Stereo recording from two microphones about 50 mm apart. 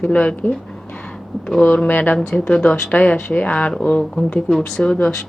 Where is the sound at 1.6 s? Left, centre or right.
Left.